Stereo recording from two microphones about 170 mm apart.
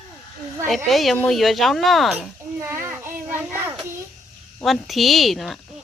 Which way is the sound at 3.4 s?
10° right (ahead or behind).